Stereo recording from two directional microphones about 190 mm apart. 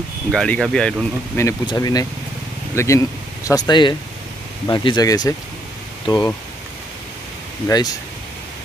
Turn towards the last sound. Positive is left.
turn(degrees=20)  # may be behind; listen again after turning